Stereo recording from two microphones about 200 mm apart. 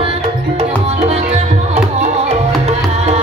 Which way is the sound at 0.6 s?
30° right (ahead or behind).